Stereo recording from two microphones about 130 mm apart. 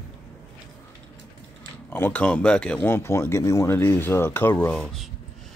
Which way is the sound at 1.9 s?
15° left (ahead or behind).